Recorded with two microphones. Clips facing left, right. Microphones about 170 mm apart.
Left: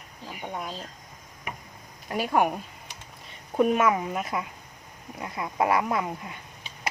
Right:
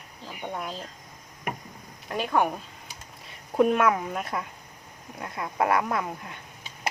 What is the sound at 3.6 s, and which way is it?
A woman's voice, 5° left (ahead or behind).